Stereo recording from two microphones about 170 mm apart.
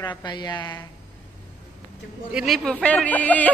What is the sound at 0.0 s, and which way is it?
Speech, 25° left (ahead or behind).